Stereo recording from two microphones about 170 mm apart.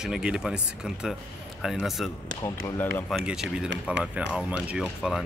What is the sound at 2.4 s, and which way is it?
Speech, 15° left (ahead or behind).